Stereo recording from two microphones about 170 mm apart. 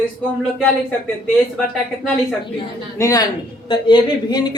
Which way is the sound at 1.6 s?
5° left (ahead or behind).